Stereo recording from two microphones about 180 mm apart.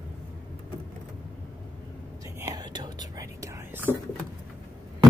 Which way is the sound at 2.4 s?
20° right (ahead or behind).